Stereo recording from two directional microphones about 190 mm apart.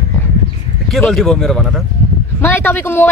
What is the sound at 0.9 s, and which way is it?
Speech, centre (ahead or behind).